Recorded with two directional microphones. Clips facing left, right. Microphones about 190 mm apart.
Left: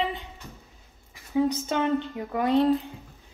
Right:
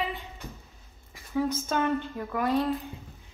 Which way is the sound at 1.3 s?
20° left (ahead or behind).